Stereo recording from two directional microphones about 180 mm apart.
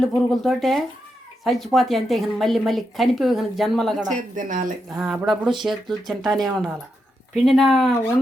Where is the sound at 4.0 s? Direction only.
45° right (ahead or behind).